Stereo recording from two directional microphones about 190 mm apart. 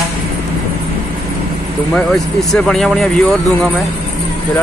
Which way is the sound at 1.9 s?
5° left (ahead or behind).